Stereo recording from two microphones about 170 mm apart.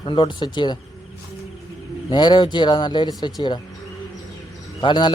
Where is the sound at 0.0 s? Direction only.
25° left (ahead or behind).